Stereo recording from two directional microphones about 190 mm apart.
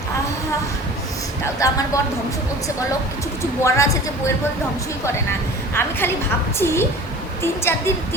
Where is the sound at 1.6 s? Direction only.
15° left (ahead or behind).